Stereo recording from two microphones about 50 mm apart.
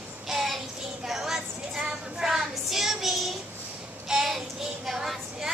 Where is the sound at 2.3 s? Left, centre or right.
Centre.